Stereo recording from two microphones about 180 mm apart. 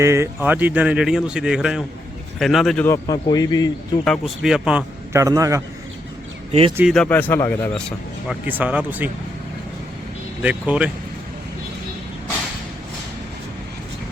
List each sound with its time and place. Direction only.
0.0 s speech: 15° right (ahead or behind); by 2.8 s centre (ahead or behind)
2.8 s speech: 20° left (ahead or behind)
4.0 s speech: centre (ahead or behind)
5.1 s speech: 20° right (ahead or behind)
6.5 s speech: 30° right (ahead or behind)
6.9 s a man's voice: 5° left (ahead or behind)
8.4 s speech: 10° right (ahead or behind)
10.4 s speech: 5° right (ahead or behind)